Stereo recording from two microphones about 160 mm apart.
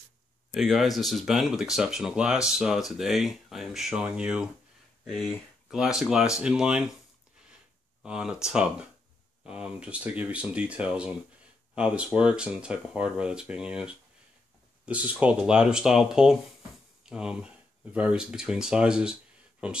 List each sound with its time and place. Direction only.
0.5 s speech: centre (ahead or behind)
8.0 s speech: 5° right (ahead or behind)